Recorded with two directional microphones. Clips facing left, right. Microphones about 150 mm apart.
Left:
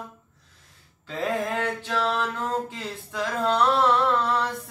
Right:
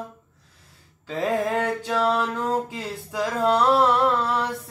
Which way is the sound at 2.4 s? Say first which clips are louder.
Right 3 dB; 10° right (ahead or behind).